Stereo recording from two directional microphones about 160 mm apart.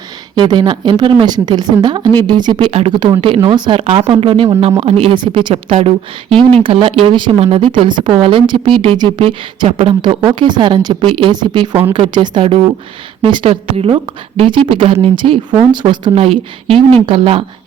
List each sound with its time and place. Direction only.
0.3 s a woman's voice: 30° right (ahead or behind)